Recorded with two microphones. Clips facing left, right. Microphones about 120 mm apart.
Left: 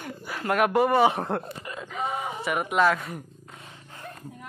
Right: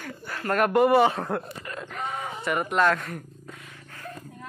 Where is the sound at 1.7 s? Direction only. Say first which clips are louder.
Left 2 dB; centre (ahead or behind).